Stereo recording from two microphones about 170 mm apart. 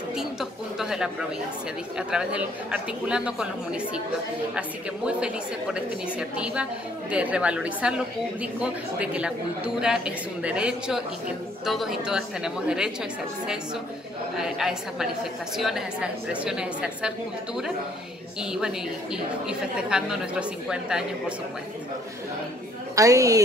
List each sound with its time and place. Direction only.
0.1 s a sound: 5° right (ahead or behind)
2.0 s a woman's voice: 5° right (ahead or behind)
14.3 s speech: 5° right (ahead or behind)
18.4 s speech: 5° right (ahead or behind)
22.9 s a woman's voice: 20° right (ahead or behind)